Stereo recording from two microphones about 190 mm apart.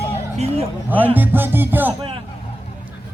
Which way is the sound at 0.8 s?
10° right (ahead or behind).